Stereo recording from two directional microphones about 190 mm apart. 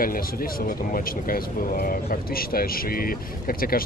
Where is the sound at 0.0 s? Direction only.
50° left (ahead or behind).